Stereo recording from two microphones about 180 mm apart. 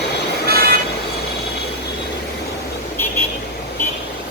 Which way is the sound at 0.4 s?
60° right (ahead or behind).